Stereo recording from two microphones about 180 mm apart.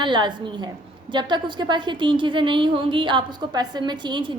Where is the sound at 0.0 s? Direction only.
25° right (ahead or behind).